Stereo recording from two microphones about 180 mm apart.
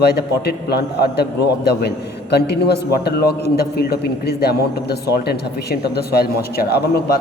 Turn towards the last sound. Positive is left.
turn(degrees=60)  # may be behind; listen again after turning